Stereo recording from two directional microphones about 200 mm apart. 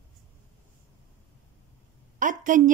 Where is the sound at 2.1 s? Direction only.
40° right (ahead or behind).